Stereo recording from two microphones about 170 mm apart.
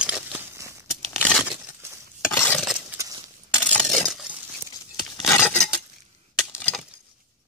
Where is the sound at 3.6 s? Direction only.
5° left (ahead or behind).